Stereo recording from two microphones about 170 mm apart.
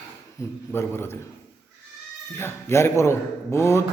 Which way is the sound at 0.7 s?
15° left (ahead or behind).